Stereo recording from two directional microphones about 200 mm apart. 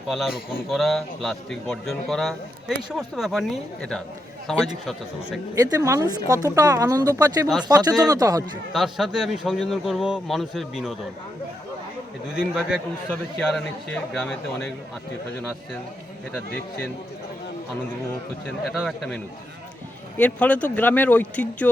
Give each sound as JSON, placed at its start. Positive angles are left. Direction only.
{"t": 0.1, "sound": "a man's voice", "side_deg": 0}
{"t": 5.5, "sound": "speech", "side_deg": -15}
{"t": 8.7, "sound": "a man's voice", "side_deg": 0}
{"t": 12.4, "sound": "a man's voice", "side_deg": -5}
{"t": 18.4, "sound": "a man's voice", "side_deg": 5}